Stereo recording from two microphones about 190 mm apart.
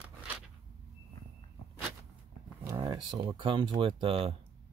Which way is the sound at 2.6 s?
20° right (ahead or behind).